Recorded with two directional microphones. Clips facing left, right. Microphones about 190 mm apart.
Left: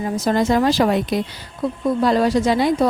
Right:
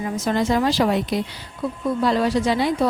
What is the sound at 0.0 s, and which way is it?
Speech, 35° left (ahead or behind).